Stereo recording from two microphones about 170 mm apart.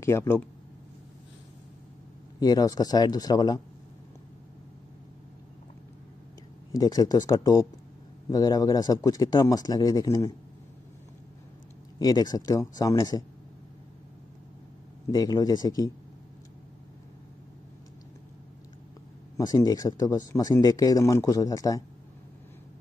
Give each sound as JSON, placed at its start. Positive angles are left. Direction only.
{"t": 0.0, "sound": "speech", "side_deg": 15}
{"t": 2.4, "sound": "speech", "side_deg": 25}
{"t": 6.7, "sound": "speech", "side_deg": 20}
{"t": 12.0, "sound": "speech", "side_deg": 20}
{"t": 15.0, "sound": "speech", "side_deg": 20}
{"t": 19.3, "sound": "speech", "side_deg": 20}